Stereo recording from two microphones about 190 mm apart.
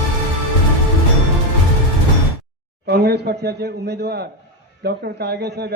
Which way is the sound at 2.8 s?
55° right (ahead or behind).